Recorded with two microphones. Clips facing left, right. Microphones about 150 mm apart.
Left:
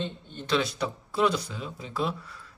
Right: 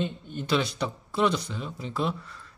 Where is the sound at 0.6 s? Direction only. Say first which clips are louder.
Left 3 dB; centre (ahead or behind).